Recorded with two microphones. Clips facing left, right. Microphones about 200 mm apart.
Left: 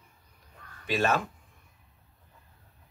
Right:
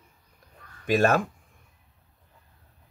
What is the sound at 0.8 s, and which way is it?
Speech, 50° right (ahead or behind).